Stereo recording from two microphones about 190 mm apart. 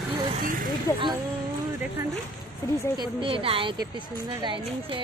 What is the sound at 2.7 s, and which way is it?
Speech, 20° left (ahead or behind).